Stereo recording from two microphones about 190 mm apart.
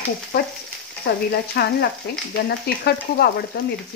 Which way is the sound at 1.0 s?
55° left (ahead or behind).